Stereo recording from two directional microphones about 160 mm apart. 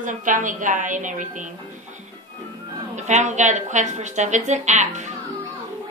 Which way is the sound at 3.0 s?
45° right (ahead or behind).